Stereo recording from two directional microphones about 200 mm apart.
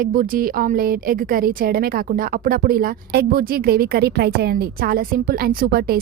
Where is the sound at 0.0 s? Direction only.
45° right (ahead or behind).